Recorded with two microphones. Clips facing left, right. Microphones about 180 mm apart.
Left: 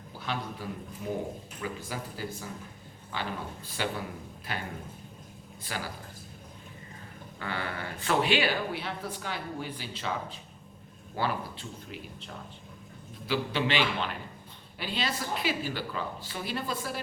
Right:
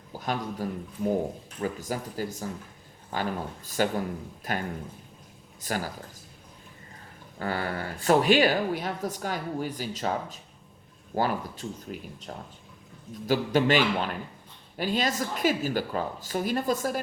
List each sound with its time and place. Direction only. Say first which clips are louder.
0.1 s a man's voice: right 4 dB; 45° right (ahead or behind)
5.6 s a woman's voice: right 6 dB; 45° right (ahead or behind)
7.3 s a woman's voice: right 5 dB; 40° right (ahead or behind)